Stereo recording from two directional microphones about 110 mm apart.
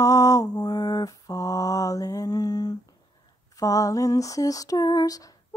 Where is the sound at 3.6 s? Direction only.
30° left (ahead or behind).